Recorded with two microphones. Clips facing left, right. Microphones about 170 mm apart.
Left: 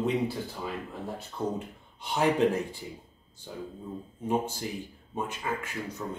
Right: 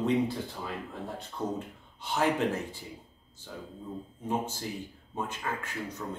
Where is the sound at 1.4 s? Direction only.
10° left (ahead or behind).